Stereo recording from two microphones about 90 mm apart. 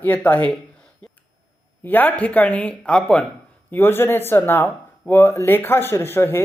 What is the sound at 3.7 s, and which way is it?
Speech, 25° left (ahead or behind).